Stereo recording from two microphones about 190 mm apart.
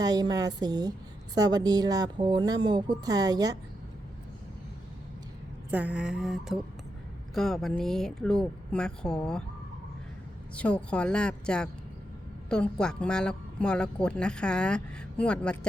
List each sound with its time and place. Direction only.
0.0 s speech: 20° right (ahead or behind)
5.7 s speech: 5° right (ahead or behind)
10.5 s speech: 5° left (ahead or behind)